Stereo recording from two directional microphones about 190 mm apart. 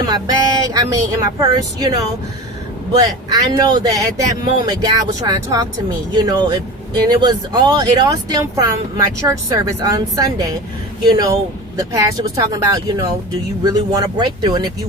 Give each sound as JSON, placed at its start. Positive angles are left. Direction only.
{"t": 0.0, "sound": "speech", "side_deg": -20}
{"t": 3.2, "sound": "speech", "side_deg": -20}